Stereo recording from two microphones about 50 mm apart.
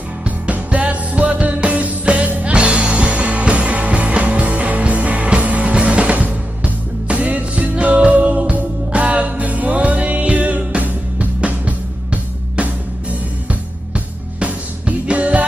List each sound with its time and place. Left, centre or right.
0.2 s music: right